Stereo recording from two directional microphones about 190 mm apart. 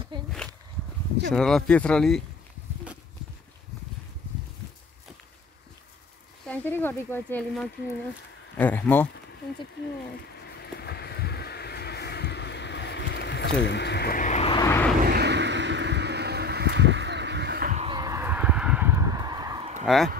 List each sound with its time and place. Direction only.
0.1 s walk: 25° right (ahead or behind)
1.3 s speech: 5° left (ahead or behind)
6.4 s speech: 10° left (ahead or behind)
10.8 s a sound: 55° left (ahead or behind); by 14.6 s 35° left (ahead or behind)
14.6 s vehicle: 15° left (ahead or behind)
15.0 s vehicle: 60° right (ahead or behind)
17.6 s a sound: 35° right (ahead or behind)
17.9 s a sound: 20° right (ahead or behind)
19.8 s speech: centre (ahead or behind)